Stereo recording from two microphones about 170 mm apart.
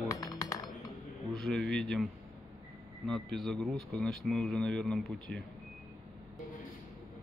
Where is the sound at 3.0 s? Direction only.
Centre (ahead or behind).